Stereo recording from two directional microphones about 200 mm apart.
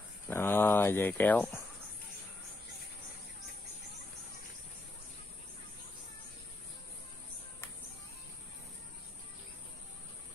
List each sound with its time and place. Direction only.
0.3 s speech: 10° left (ahead or behind)